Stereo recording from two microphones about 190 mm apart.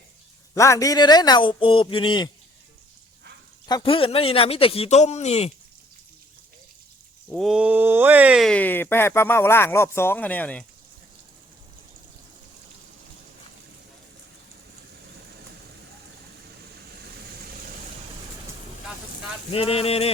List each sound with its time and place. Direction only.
0.5 s speech: 15° left (ahead or behind)
3.7 s speech: 25° left (ahead or behind)
7.3 s speech: centre (ahead or behind)
19.5 s speech: 30° left (ahead or behind)